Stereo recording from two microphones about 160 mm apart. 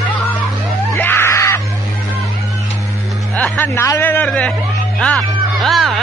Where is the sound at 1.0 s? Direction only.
15° left (ahead or behind).